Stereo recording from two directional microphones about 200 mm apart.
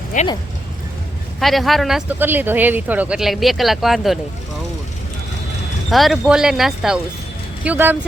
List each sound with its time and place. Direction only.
0.1 s speech: 40° left (ahead or behind)
1.4 s speech: centre (ahead or behind)
5.9 s speech: centre (ahead or behind)